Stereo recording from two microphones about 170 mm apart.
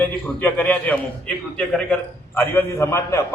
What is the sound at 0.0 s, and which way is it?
A man's voice, 10° left (ahead or behind).